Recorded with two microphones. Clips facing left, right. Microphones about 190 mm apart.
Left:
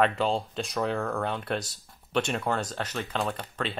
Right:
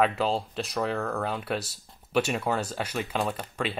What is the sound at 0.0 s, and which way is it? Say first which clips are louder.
Speech: even; 5° right (ahead or behind).